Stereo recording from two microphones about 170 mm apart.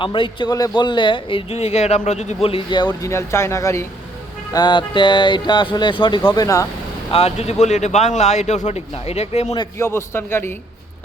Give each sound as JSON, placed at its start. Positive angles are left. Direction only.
{"t": 0.0, "sound": "speech", "side_deg": 30}
{"t": 7.1, "sound": "speech", "side_deg": 35}
{"t": 9.6, "sound": "a man's voice", "side_deg": 15}